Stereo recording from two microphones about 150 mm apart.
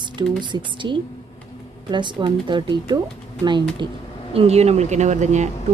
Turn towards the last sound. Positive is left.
turn(degrees=-50)  # may be behind; listen again after turning